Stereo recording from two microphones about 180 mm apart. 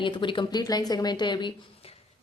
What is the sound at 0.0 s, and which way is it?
A woman's voice, 25° left (ahead or behind).